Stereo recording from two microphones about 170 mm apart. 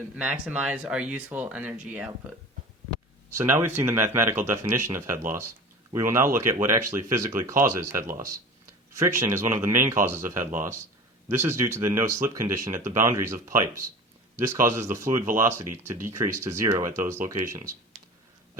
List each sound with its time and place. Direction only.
0.2 s speech: 5° right (ahead or behind)
3.2 s speech: 15° right (ahead or behind)